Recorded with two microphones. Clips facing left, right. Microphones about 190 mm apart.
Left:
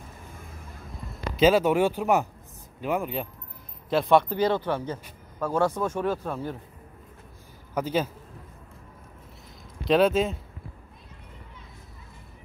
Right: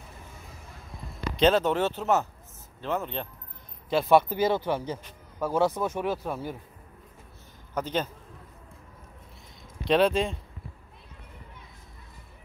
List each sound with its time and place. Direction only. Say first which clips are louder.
1.3 s speech: left 3 dB; 5° left (ahead or behind)
3.9 s speech: even; 5° right (ahead or behind)
7.7 s speech: left 3 dB; 5° left (ahead or behind)
9.8 s speech: left 2 dB; centre (ahead or behind)